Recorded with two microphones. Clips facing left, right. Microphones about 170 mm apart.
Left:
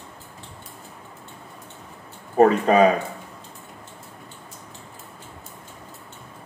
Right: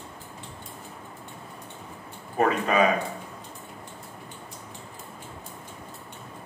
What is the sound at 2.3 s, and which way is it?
Speech, 35° left (ahead or behind).